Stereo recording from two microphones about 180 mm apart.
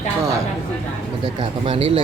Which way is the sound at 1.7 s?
35° right (ahead or behind).